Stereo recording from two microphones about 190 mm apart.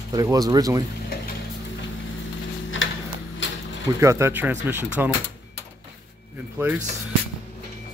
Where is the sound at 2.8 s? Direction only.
90° left.